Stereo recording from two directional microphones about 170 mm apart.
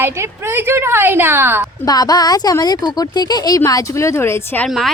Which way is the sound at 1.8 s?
20° left (ahead or behind).